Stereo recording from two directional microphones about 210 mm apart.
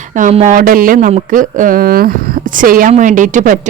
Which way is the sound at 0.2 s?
35° right (ahead or behind).